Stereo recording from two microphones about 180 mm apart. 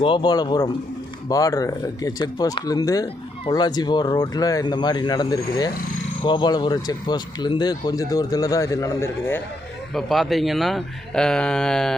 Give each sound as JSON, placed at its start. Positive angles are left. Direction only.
{"t": 0.0, "sound": "speech", "side_deg": 25}
{"t": 9.9, "sound": "speech", "side_deg": 0}